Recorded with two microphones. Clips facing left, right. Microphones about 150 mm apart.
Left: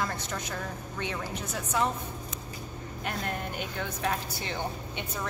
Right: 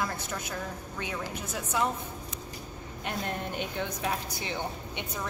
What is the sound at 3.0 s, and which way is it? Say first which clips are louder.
Speech: even; 25° right (ahead or behind).